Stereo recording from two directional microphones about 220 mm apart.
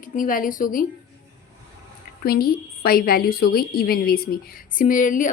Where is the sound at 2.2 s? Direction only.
45° left (ahead or behind).